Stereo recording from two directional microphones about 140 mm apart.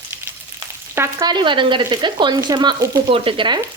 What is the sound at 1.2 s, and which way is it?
Speech, 35° right (ahead or behind).